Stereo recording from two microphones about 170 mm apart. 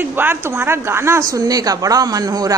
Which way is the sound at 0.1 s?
10° right (ahead or behind).